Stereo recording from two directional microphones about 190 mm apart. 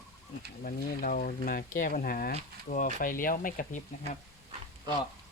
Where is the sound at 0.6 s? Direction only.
45° left (ahead or behind).